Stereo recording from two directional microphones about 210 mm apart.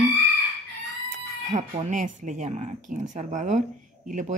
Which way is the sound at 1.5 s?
35° right (ahead or behind).